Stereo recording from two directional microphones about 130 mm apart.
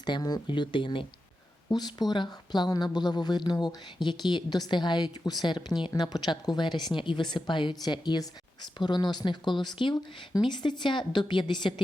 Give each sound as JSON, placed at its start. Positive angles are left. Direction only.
{"t": 0.0, "sound": "speech", "side_deg": 35}